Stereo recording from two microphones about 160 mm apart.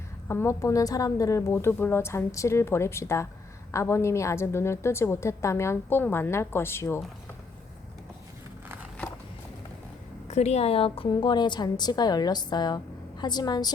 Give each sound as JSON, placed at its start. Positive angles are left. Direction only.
{"t": 0.3, "sound": "a woman's voice", "side_deg": 15}
{"t": 10.2, "sound": "a woman's voice", "side_deg": 45}